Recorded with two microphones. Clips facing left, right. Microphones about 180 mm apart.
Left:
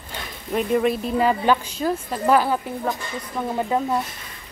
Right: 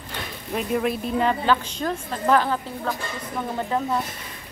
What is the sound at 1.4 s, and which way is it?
A woman's voice, 10° left (ahead or behind).